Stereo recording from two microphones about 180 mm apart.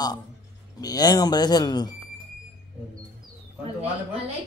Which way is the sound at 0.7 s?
20° left (ahead or behind).